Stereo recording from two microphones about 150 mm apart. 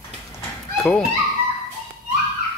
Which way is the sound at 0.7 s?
Centre (ahead or behind).